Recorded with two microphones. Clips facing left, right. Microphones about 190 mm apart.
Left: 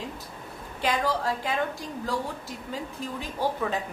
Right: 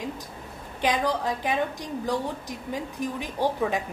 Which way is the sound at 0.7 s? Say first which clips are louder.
Right 2 dB; 20° right (ahead or behind).